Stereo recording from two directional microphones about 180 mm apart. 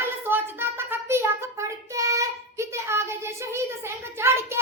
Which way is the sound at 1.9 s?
15° right (ahead or behind).